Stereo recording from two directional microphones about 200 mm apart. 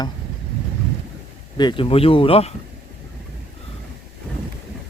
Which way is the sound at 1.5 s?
25° left (ahead or behind).